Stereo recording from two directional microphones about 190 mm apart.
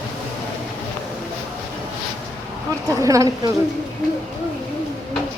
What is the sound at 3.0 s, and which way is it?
Speech, 15° right (ahead or behind).